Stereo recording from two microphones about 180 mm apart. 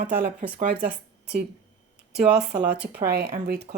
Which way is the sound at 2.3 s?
5° right (ahead or behind).